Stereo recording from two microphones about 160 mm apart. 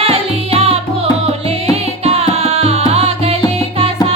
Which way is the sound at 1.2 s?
40° right (ahead or behind).